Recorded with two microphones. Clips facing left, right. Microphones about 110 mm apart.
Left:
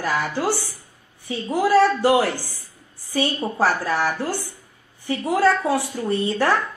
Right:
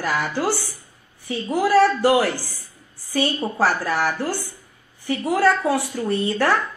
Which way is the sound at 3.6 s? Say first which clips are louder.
Even; 20° left (ahead or behind).